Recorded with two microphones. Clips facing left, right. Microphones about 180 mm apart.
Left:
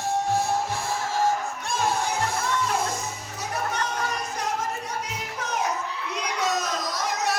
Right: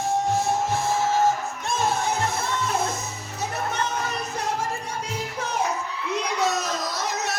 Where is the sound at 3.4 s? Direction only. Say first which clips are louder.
Right 1 dB; 25° right (ahead or behind).